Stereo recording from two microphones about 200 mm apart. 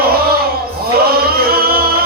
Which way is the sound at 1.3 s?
50° right (ahead or behind).